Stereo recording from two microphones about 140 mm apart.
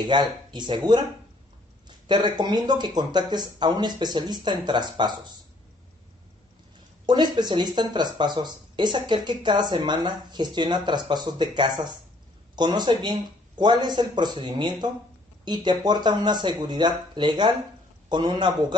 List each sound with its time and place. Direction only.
0.0 s speech: 30° right (ahead or behind)
2.0 s speech: 30° right (ahead or behind)
7.1 s speech: 30° right (ahead or behind)